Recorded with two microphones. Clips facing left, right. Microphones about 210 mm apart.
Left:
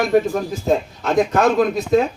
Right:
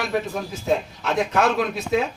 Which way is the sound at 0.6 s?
45° left (ahead or behind).